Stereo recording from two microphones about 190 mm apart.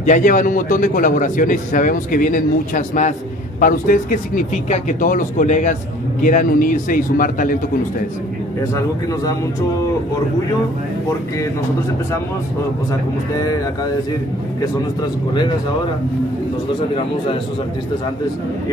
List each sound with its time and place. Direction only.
0.0 s a man's voice: 40° left (ahead or behind)